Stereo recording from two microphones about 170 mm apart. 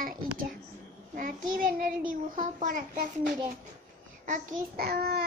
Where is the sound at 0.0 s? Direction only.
55° right (ahead or behind).